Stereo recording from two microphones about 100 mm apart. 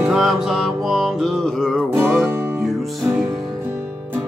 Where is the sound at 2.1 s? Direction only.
20° right (ahead or behind).